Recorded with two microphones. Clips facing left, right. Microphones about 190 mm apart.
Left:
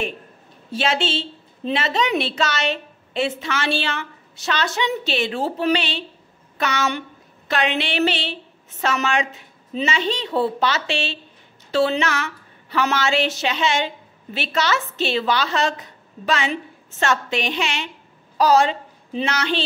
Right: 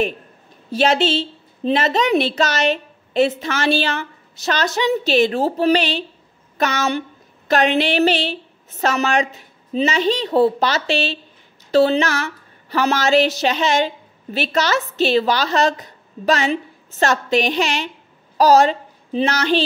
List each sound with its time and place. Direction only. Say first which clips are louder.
0.7 s a woman's voice: right 6 dB; 40° right (ahead or behind)